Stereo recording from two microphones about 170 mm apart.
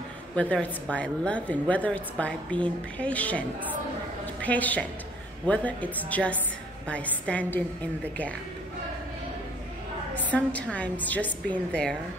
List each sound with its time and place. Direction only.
0.4 s a woman's voice: 5° left (ahead or behind)
10.1 s a woman's voice: 10° left (ahead or behind)